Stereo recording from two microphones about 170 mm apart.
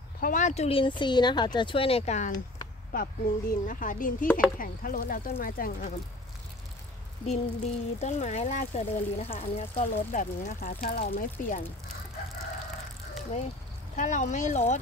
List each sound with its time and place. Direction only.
0.2 s speech: 50° left (ahead or behind)
0.7 s speech: 30° left (ahead or behind)
2.9 s speech: 55° left (ahead or behind)
7.2 s speech: 40° left (ahead or behind)
10.1 s speech: 50° left (ahead or behind)
13.9 s speech: 45° left (ahead or behind)